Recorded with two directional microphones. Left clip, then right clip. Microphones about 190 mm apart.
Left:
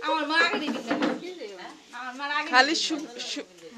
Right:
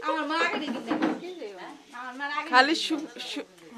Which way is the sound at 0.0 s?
25° left (ahead or behind).